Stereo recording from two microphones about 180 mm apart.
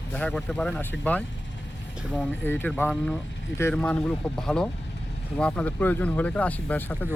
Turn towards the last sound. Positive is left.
turn(degrees=10)  # may be behind; listen again after turning